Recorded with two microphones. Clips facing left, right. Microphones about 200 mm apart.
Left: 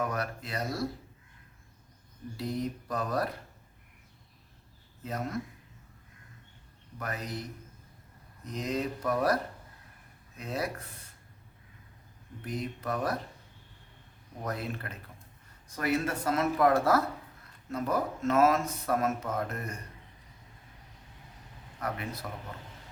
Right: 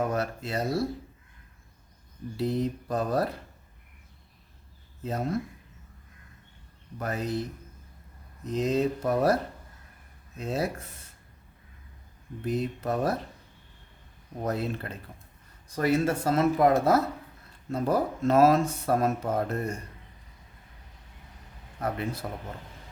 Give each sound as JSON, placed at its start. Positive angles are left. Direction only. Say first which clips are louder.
{"t": 0.0, "sound": "speech", "louder": "right 4 dB", "side_deg": -25}
{"t": 2.4, "sound": "speech", "louder": "right 6 dB", "side_deg": -25}
{"t": 5.0, "sound": "speech", "louder": "right 5 dB", "side_deg": -30}
{"t": 7.0, "sound": "speech", "louder": "right 7 dB", "side_deg": -25}
{"t": 8.4, "sound": "speech", "louder": "right 7 dB", "side_deg": -25}
{"t": 12.5, "sound": "speech", "louder": "right 6 dB", "side_deg": -25}
{"t": 14.4, "sound": "speech", "louder": "right 6 dB", "side_deg": -25}
{"t": 21.8, "sound": "speech", "louder": "right 5 dB", "side_deg": -30}